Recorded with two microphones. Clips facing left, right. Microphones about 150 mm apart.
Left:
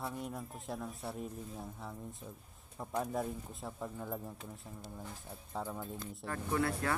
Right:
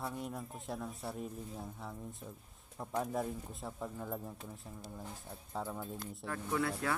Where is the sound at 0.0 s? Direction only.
Centre (ahead or behind).